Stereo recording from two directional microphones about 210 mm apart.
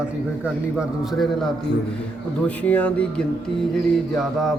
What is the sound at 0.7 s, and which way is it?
Speech, centre (ahead or behind).